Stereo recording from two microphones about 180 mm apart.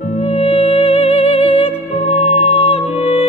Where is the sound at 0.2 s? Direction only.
30° left (ahead or behind).